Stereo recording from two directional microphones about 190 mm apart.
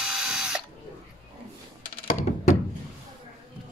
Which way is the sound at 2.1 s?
40° left (ahead or behind).